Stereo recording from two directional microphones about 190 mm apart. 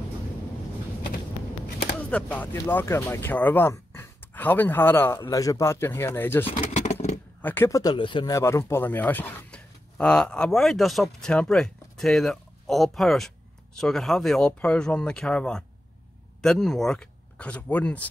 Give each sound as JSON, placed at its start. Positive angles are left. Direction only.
{"t": 2.0, "sound": "a sound", "side_deg": 5}
{"t": 2.3, "sound": "speech", "side_deg": 10}
{"t": 6.4, "sound": "vehicle", "side_deg": 30}
{"t": 7.4, "sound": "speech", "side_deg": 10}
{"t": 8.4, "sound": "speech", "side_deg": 15}